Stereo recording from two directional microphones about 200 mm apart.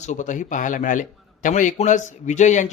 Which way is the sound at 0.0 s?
40° left (ahead or behind).